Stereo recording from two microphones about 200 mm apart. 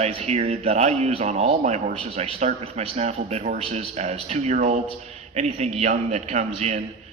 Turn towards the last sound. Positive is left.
turn(degrees=-35)  # may be behind; listen again after turning